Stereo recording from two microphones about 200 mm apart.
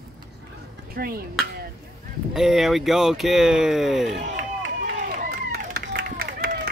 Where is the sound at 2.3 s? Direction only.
Centre (ahead or behind).